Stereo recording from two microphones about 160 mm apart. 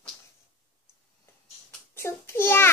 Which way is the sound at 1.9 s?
15° left (ahead or behind).